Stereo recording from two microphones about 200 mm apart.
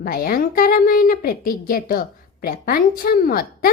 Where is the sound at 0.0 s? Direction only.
45° left (ahead or behind).